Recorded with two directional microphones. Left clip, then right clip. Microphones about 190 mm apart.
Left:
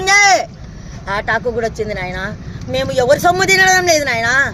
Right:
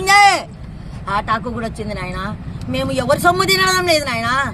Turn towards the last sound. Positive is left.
turn(degrees=0)  # may be behind; listen again after turning